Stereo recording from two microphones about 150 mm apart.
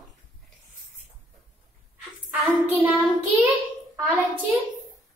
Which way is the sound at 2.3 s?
10° right (ahead or behind).